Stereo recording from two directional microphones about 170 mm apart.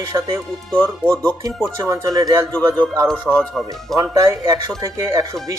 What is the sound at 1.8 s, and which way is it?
Speech, 20° right (ahead or behind).